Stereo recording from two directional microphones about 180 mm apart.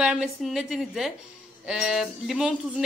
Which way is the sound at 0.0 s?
5° right (ahead or behind).